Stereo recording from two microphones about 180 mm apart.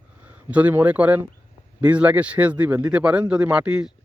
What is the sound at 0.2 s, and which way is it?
Speech, 10° right (ahead or behind).